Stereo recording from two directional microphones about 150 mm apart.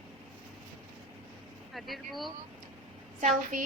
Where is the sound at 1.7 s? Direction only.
Centre (ahead or behind).